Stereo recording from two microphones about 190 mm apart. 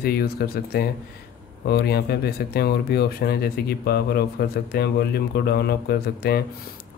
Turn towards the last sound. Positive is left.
turn(degrees=55)  # may be behind; listen again after turning